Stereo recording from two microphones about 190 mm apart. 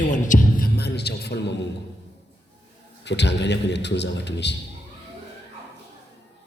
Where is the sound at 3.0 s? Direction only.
65° left (ahead or behind).